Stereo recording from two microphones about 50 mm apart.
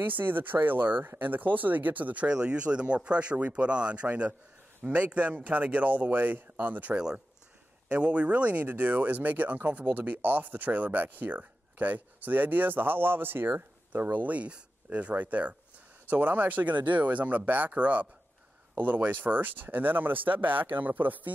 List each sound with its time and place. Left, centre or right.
0.0 s speech: right
2.2 s speech: right
6.9 s speech: centre; by 21.3 s right